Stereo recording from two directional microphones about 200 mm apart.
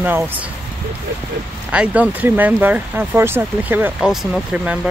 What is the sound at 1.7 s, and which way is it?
Speech, 5° right (ahead or behind).